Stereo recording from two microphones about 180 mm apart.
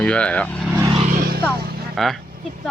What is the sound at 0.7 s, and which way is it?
Vehicle, 15° right (ahead or behind).